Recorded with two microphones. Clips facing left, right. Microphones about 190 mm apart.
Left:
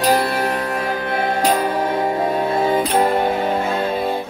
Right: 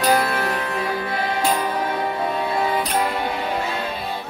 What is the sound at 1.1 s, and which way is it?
Music, 50° left (ahead or behind).